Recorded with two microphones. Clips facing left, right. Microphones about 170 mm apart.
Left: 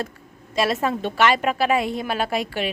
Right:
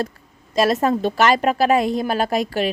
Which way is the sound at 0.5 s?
40° right (ahead or behind).